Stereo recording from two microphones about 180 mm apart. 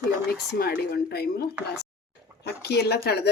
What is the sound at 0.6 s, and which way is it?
A woman's voice, 60° left (ahead or behind).